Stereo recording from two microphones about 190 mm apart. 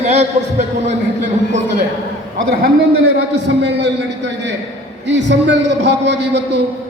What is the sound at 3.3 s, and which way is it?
A man's voice, 65° right (ahead or behind).